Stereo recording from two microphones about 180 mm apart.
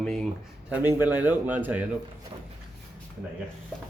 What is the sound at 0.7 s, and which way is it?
A man's voice, 10° right (ahead or behind).